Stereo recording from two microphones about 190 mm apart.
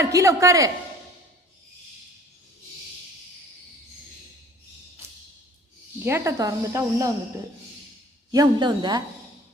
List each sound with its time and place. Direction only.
0.0 s speech: 15° right (ahead or behind)
6.1 s speech: 15° right (ahead or behind)
8.3 s speech: 20° right (ahead or behind)